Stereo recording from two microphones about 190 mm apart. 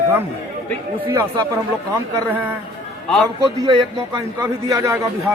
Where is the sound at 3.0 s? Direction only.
5° left (ahead or behind).